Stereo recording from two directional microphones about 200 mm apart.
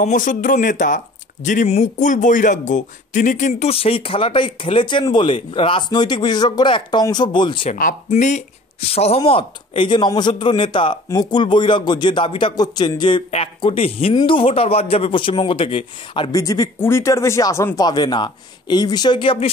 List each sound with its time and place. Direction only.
0.0 s speech: 40° left (ahead or behind); by 7.7 s 25° left (ahead or behind)
8.1 s speech: 35° left (ahead or behind)